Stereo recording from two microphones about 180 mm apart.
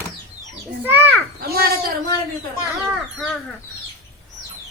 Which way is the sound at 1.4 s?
60° right (ahead or behind).